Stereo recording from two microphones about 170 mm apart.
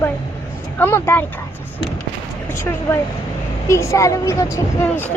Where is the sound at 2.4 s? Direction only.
15° left (ahead or behind).